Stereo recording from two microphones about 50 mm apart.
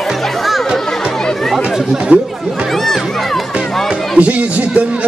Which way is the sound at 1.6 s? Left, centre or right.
Centre.